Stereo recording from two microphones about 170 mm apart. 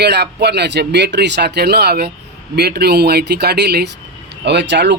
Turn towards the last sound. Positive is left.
turn(degrees=-90)